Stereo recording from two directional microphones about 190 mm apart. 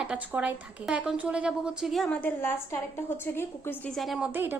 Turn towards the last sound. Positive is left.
turn(degrees=-10)  # may be behind; listen again after turning